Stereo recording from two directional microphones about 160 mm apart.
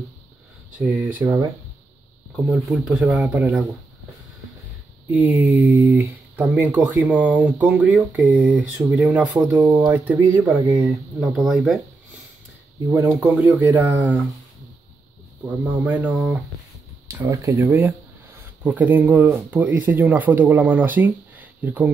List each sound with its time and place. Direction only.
0.7 s speech: 10° right (ahead or behind)
5.1 s speech: 10° right (ahead or behind)
13.0 s speech: 5° right (ahead or behind)
15.4 s speech: 10° right (ahead or behind)
17.1 s speech: 20° right (ahead or behind)